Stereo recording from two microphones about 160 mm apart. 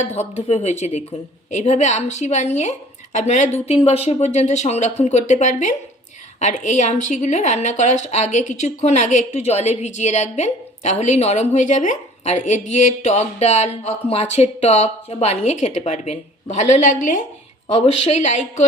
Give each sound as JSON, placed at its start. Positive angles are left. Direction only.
{"t": 0.3, "sound": "a woman's voice", "side_deg": 40}
{"t": 17.7, "sound": "a woman's voice", "side_deg": 40}